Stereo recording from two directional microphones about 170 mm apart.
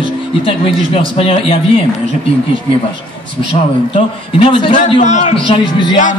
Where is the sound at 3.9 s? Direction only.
30° left (ahead or behind).